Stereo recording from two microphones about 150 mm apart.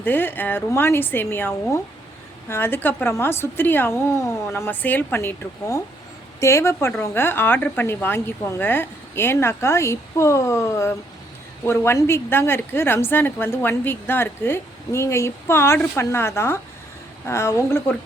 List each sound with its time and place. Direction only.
0.0 s a woman's voice: 15° left (ahead or behind)